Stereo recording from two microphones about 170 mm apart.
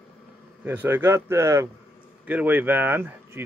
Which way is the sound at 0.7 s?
10° right (ahead or behind).